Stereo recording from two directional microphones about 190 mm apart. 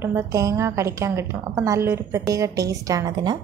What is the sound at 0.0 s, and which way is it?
A woman's voice, 15° right (ahead or behind).